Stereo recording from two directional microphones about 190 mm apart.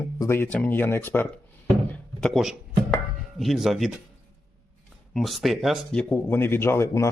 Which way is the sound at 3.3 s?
Centre (ahead or behind).